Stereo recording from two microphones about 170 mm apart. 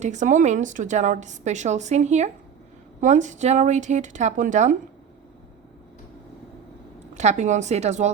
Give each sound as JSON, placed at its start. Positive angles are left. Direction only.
{"t": 0.0, "sound": "a woman's voice", "side_deg": -45}
{"t": 7.1, "sound": "a woman's voice", "side_deg": -45}